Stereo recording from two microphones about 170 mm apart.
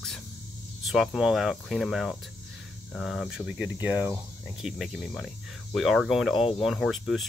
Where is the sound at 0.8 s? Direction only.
5° right (ahead or behind).